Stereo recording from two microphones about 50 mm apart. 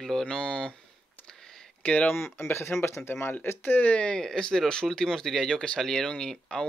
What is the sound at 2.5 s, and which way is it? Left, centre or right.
Speech, left.